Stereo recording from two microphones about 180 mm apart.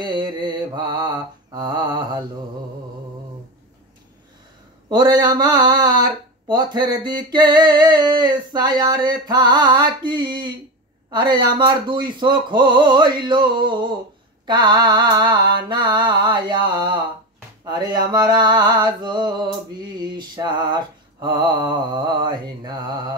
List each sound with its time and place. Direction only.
0.0 s mantra: 25° right (ahead or behind)
4.8 s speech: 25° right (ahead or behind)